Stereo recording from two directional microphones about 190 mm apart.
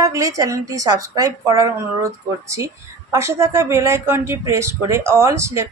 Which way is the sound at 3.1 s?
15° right (ahead or behind).